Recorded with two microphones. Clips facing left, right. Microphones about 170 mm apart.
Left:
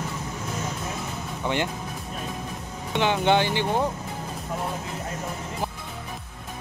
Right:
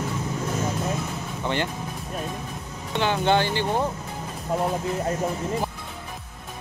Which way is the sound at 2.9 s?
15° left (ahead or behind).